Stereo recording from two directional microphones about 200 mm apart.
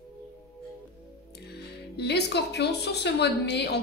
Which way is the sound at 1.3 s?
55° left (ahead or behind).